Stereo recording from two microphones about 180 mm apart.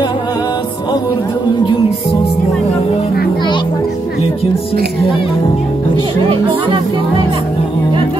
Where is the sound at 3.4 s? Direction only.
25° left (ahead or behind).